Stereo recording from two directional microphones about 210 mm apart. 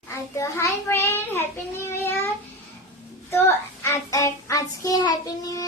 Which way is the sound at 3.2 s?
10° left (ahead or behind).